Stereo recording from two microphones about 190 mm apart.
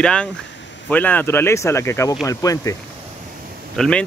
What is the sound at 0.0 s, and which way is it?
A man's voice, 5° left (ahead or behind).